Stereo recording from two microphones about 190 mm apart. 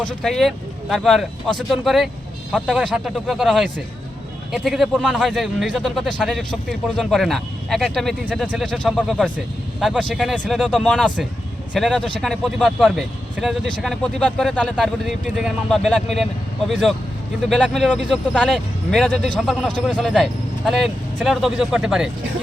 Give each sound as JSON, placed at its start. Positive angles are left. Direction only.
{"t": 0.0, "sound": "speech", "side_deg": 5}